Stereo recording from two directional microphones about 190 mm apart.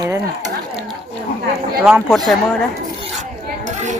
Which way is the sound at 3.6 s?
40° right (ahead or behind).